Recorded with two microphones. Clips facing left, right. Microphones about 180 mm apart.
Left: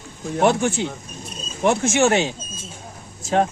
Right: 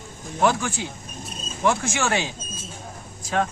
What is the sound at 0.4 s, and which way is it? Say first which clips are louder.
Speech: left 4 dB; 25° left (ahead or behind).